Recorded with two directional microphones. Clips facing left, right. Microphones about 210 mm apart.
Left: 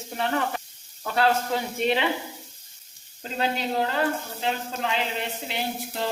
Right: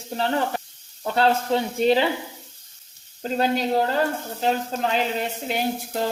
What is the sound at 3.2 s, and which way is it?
Speech, 40° right (ahead or behind).